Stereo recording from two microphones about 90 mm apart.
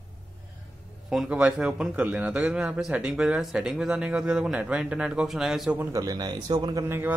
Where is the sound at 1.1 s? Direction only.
10° right (ahead or behind).